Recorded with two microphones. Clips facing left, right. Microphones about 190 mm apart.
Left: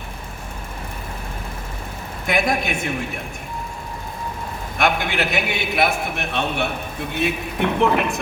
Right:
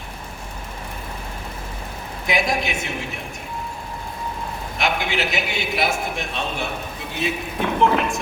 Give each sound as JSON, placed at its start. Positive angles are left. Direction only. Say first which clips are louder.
{"t": 2.2, "sound": "a woman's voice", "louder": "left 2 dB", "side_deg": 55}
{"t": 4.8, "sound": "a man's voice", "louder": "left 3 dB", "side_deg": 55}